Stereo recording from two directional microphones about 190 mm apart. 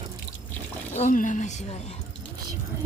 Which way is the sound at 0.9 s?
40° left (ahead or behind).